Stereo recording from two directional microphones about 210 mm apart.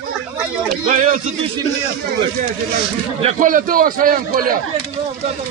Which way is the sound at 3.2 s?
40° right (ahead or behind).